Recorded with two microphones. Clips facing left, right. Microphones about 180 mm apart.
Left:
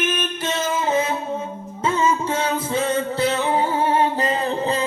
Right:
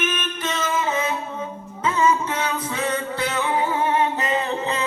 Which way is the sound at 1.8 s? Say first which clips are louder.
Even; 30° left (ahead or behind).